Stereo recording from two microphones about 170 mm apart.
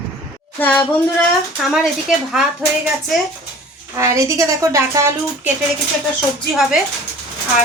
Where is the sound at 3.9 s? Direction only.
15° right (ahead or behind).